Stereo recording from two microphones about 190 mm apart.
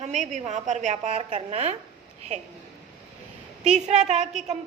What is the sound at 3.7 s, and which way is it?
Speech, 35° right (ahead or behind).